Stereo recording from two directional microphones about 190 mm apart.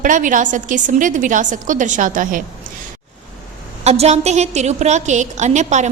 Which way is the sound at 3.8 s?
35° right (ahead or behind).